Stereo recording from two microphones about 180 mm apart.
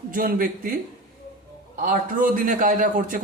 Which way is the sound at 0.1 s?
50° right (ahead or behind).